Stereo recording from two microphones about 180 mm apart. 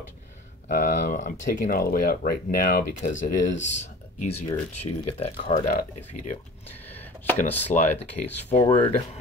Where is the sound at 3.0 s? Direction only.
45° left (ahead or behind).